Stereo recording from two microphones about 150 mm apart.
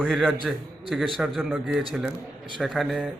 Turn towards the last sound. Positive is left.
turn(degrees=-5)  # may be behind; listen again after turning